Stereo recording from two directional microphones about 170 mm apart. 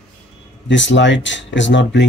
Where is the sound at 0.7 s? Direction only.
90° left.